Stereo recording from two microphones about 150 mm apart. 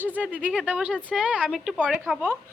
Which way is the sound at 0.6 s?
10° right (ahead or behind).